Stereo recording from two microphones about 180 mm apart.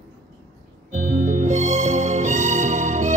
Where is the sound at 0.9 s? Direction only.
40° right (ahead or behind).